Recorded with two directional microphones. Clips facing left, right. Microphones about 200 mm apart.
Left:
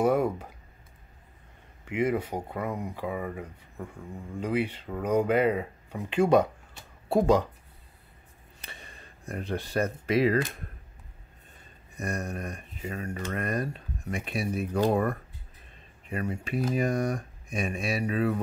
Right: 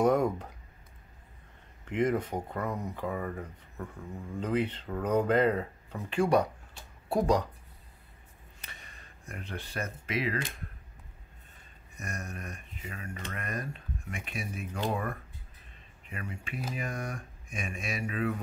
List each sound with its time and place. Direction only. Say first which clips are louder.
0.0 s speech: left 1 dB; 5° left (ahead or behind)
1.9 s speech: left 1 dB; 10° left (ahead or behind); by 7.4 s 25° left (ahead or behind)
8.5 s a sound: left 5 dB; 30° left (ahead or behind)
12.0 s speech: left 8 dB; 35° left (ahead or behind)